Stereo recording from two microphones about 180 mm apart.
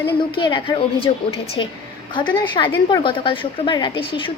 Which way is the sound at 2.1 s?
25° left (ahead or behind).